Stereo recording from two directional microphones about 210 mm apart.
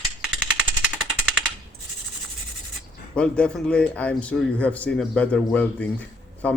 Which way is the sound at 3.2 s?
5° left (ahead or behind).